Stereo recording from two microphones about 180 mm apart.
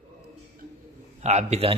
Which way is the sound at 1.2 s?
40° right (ahead or behind).